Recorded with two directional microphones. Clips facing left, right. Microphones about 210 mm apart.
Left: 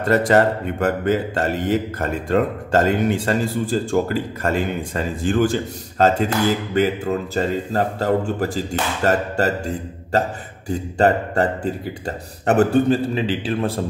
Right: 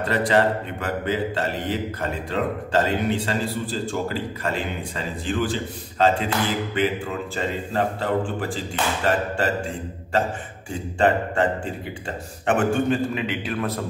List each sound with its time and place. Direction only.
0.0 s a man's voice: 45° left (ahead or behind)